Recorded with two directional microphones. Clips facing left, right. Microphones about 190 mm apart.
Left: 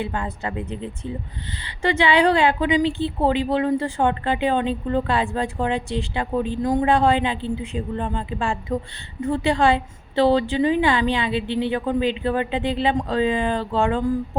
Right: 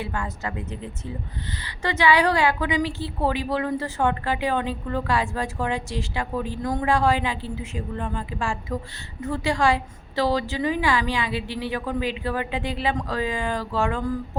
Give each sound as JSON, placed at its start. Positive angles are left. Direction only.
{"t": 0.0, "sound": "a woman's voice", "side_deg": 20}
{"t": 0.3, "sound": "a woman's voice", "side_deg": 30}